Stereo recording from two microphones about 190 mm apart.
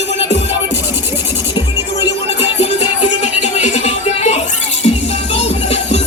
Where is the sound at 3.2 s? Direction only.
35° left (ahead or behind).